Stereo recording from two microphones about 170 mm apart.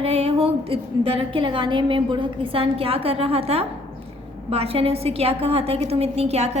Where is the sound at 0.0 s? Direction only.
35° right (ahead or behind).